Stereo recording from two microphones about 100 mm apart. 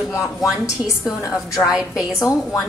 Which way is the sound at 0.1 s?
35° left (ahead or behind).